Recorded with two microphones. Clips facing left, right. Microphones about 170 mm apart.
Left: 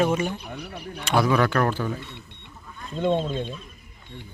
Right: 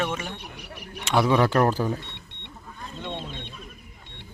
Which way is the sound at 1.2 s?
25° right (ahead or behind).